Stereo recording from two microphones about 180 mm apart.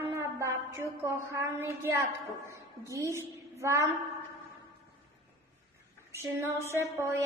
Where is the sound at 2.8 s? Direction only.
15° right (ahead or behind).